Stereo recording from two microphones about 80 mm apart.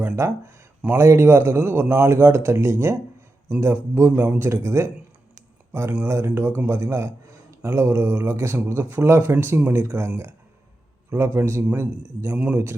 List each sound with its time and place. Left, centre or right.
0.2 s a man's voice: right
11.1 s a man's voice: right